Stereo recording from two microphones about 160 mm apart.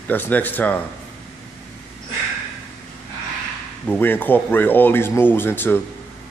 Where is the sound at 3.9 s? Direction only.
10° left (ahead or behind).